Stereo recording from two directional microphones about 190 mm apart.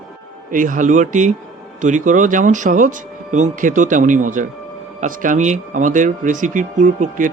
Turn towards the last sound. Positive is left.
turn(degrees=-40)  # may be behind; listen again after turning